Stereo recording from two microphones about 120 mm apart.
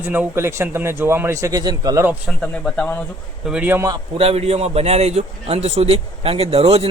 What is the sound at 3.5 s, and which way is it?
Speech, 15° right (ahead or behind).